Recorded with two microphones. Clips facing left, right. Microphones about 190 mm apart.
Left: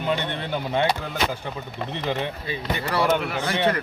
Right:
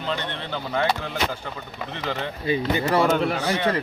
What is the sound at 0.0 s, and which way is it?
Speech, 15° left (ahead or behind).